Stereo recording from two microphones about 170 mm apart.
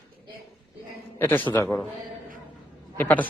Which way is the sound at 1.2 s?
10° left (ahead or behind).